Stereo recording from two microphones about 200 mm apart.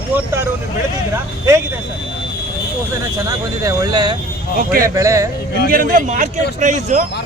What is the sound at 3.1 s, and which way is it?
Speech, 15° right (ahead or behind).